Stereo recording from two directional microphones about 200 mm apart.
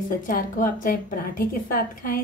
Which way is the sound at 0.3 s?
40° left (ahead or behind).